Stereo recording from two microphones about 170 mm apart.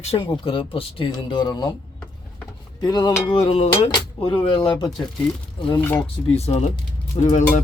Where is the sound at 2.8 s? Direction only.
25° left (ahead or behind).